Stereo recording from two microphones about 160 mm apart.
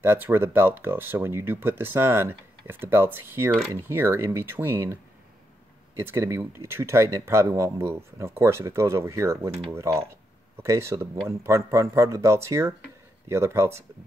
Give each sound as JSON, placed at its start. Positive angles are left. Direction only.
{"t": 0.0, "sound": "speech", "side_deg": -15}
{"t": 5.9, "sound": "speech", "side_deg": -15}